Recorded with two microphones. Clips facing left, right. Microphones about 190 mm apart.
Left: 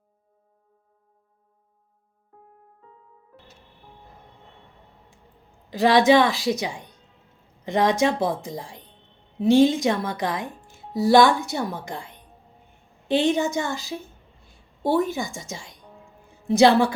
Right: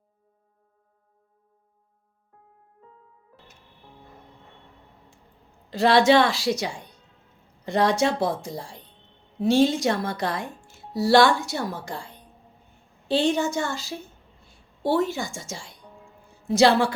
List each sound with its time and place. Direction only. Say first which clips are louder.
5.7 s a woman's voice: left 1 dB; 15° left (ahead or behind)
15.1 s speech: left 2 dB; 20° left (ahead or behind)